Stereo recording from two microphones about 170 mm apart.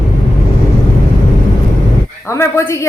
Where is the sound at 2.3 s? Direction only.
15° left (ahead or behind).